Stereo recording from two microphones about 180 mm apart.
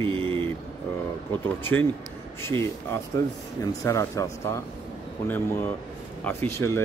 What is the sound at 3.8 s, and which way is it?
Speech, 20° left (ahead or behind).